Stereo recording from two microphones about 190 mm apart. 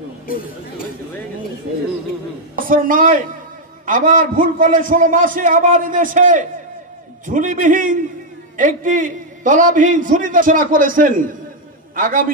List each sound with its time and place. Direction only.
2.7 s a man's voice: 45° right (ahead or behind)